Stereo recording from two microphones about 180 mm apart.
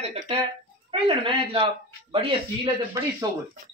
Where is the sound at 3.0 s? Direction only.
15° right (ahead or behind).